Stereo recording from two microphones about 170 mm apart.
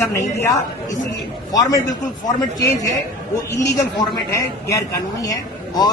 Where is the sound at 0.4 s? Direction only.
20° left (ahead or behind).